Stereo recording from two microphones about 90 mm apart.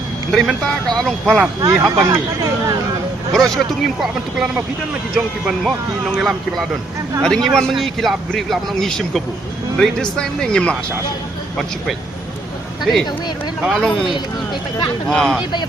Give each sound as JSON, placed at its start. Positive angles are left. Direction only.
{"t": 0.3, "sound": "speech", "side_deg": 5}
{"t": 1.6, "sound": "speech", "side_deg": -35}
{"t": 3.3, "sound": "speech", "side_deg": 5}
{"t": 12.8, "sound": "speech", "side_deg": 0}